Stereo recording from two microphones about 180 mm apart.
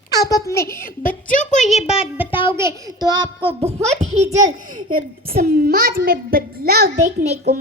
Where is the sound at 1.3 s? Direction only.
45° left (ahead or behind).